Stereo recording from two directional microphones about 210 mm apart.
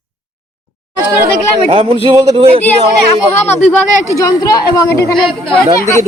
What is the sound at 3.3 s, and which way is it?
Speech, 10° left (ahead or behind).